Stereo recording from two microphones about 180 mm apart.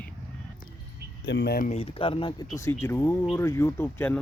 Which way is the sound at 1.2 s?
70° left (ahead or behind).